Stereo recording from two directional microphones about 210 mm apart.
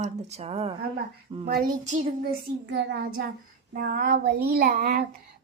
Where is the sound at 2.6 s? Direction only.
55° right (ahead or behind).